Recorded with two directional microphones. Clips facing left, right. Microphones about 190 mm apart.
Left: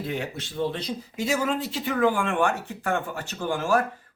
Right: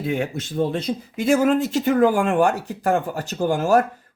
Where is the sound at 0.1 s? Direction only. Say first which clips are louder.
Right 7 dB; 45° right (ahead or behind).